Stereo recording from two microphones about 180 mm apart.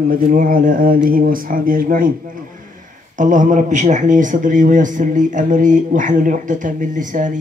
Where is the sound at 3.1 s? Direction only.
45° right (ahead or behind).